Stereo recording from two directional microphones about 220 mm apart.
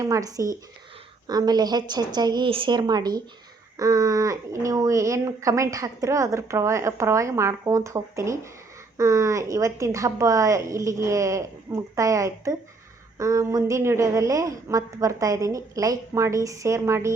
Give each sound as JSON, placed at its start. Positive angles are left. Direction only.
{"t": 0.0, "sound": "a woman's voice", "side_deg": -15}